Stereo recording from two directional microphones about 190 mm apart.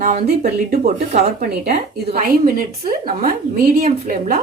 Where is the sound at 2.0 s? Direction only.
50° right (ahead or behind).